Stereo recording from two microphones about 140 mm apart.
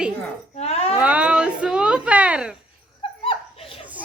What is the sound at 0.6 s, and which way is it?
Speech, 50° left (ahead or behind).